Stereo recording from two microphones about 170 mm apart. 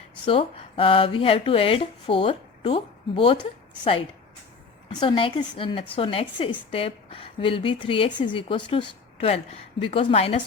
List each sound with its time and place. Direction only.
0.3 s speech: 35° left (ahead or behind)
4.9 s speech: 30° left (ahead or behind)